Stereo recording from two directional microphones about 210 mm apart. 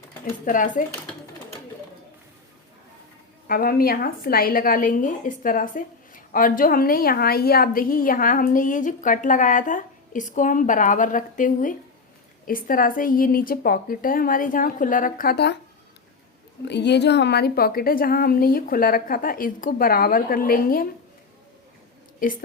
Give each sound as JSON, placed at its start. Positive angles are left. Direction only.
{"t": 0.4, "sound": "a woman's voice", "side_deg": 40}
{"t": 3.4, "sound": "a woman's voice", "side_deg": 45}
{"t": 16.6, "sound": "a woman's voice", "side_deg": 55}
{"t": 22.2, "sound": "a woman's voice", "side_deg": 40}